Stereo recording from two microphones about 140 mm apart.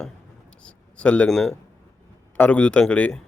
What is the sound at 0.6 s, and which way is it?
Speech, 10° left (ahead or behind).